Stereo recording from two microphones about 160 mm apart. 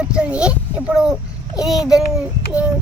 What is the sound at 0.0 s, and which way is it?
A child's voice, 5° right (ahead or behind).